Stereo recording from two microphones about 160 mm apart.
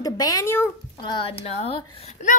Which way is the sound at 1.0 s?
30° left (ahead or behind).